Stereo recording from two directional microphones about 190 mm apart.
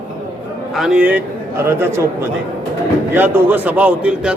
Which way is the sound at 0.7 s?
5° right (ahead or behind).